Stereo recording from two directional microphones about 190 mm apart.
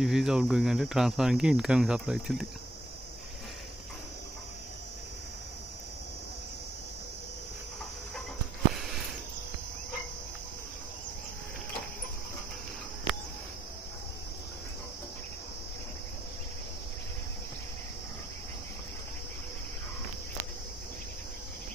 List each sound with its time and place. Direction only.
0.0 s speech: centre (ahead or behind)